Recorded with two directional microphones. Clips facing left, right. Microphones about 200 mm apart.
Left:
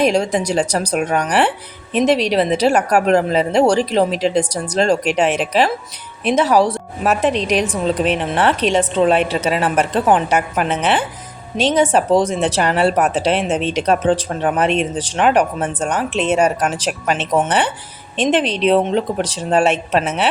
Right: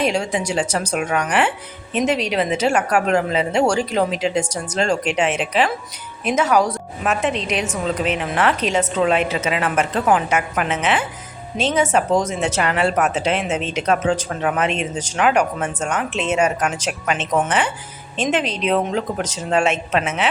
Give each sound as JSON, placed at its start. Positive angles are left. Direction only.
{"t": 0.0, "sound": "a woman's voice", "side_deg": 40}